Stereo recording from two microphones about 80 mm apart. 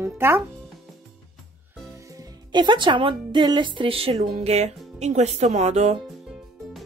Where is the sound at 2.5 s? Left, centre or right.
Right.